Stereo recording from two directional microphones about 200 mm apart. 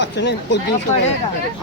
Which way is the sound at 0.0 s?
60° left (ahead or behind).